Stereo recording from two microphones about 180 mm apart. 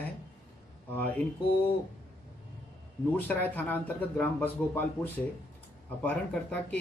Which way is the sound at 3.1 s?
10° left (ahead or behind).